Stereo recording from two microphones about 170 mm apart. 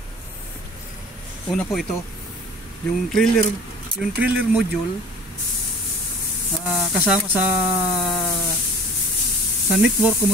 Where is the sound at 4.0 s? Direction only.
10° right (ahead or behind).